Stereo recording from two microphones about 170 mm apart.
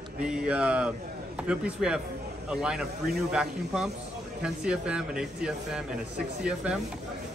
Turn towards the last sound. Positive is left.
turn(degrees=-5)  # may be behind; listen again after turning